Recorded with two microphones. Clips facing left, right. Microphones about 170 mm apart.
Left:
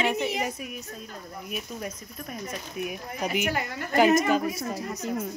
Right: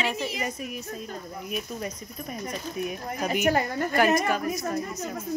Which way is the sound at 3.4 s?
45° right (ahead or behind).